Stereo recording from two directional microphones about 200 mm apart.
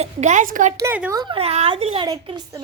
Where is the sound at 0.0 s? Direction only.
35° right (ahead or behind).